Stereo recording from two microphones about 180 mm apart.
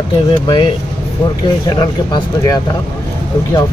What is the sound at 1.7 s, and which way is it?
Speech, 20° left (ahead or behind).